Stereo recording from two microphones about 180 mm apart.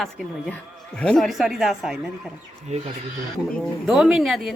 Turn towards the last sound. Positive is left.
turn(degrees=0)  # may be behind; listen again after turning